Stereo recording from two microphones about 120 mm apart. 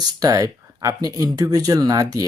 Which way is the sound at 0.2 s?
30° right (ahead or behind).